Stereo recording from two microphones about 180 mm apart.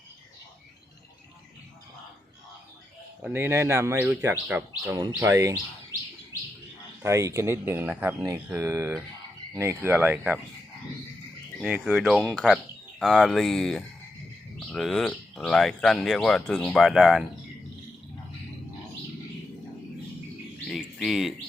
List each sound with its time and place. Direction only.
3.2 s speech: 10° right (ahead or behind)
6.3 s bird: 20° left (ahead or behind)
7.0 s speech: 15° right (ahead or behind)
11.6 s speech: 5° right (ahead or behind)
20.7 s a sound: centre (ahead or behind)